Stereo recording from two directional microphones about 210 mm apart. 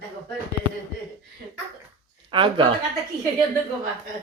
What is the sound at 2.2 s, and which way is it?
Speech, 25° right (ahead or behind).